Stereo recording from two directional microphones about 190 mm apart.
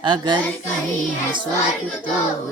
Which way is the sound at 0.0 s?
25° right (ahead or behind).